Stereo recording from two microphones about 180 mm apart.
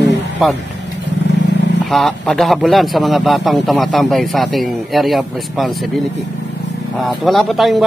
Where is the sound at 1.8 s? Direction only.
Centre (ahead or behind).